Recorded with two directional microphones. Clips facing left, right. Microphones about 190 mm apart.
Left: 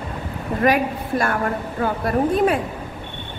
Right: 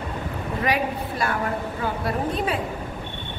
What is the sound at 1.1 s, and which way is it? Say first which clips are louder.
A woman's voice: left 6 dB; 55° left (ahead or behind).